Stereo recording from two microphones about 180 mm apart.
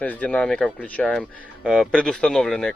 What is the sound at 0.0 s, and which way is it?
Speech, 10° left (ahead or behind).